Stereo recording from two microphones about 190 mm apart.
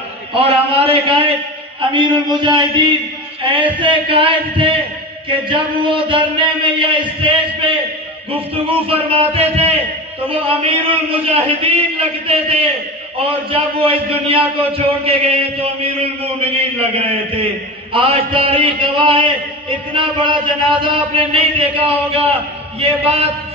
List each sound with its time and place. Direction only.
0.3 s a man's voice: 30° right (ahead or behind)